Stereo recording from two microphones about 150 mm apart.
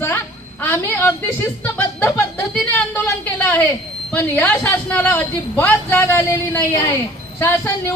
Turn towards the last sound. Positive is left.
turn(degrees=20)  # may be behind; listen again after turning